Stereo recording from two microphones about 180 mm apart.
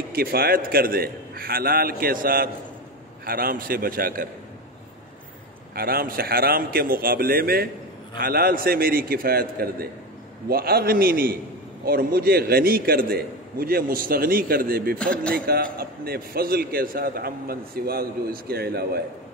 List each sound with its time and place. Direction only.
0.1 s a man's voice: 55° right (ahead or behind)
5.8 s a man's voice: 55° right (ahead or behind)
15.0 s speech: 5° left (ahead or behind)
15.3 s a man's voice: 55° right (ahead or behind)